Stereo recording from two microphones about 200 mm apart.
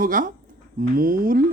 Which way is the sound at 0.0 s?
45° right (ahead or behind).